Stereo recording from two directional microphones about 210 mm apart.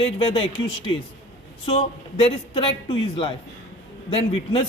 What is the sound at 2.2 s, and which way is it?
Speech, 30° left (ahead or behind).